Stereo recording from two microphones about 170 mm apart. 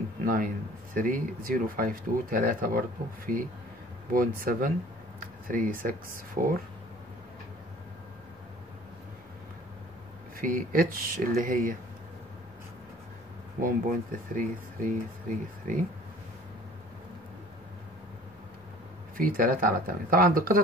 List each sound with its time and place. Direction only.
0.2 s a sound: 55° right (ahead or behind)
0.9 s speech: 55° right (ahead or behind)
4.1 s speech: 55° right (ahead or behind)
10.3 s speech: 55° right (ahead or behind)
13.6 s speech: 55° right (ahead or behind)
19.1 s speech: 55° right (ahead or behind)